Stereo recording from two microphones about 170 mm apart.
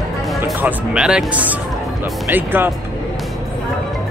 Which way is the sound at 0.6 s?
5° right (ahead or behind).